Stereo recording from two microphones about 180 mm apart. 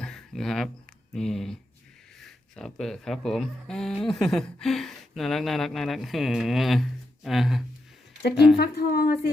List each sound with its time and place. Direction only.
0.0 s a sound: centre (ahead or behind)
1.1 s speech: centre (ahead or behind)
8.5 s a woman's voice: 60° left (ahead or behind)